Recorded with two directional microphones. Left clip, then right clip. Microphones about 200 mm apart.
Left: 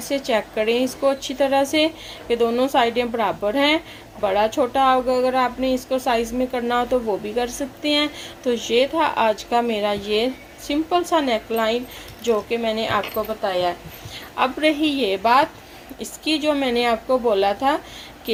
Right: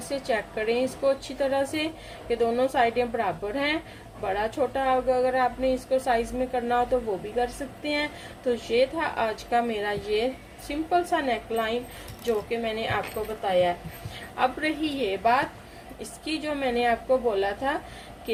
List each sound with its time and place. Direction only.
0.1 s a woman's voice: 40° left (ahead or behind)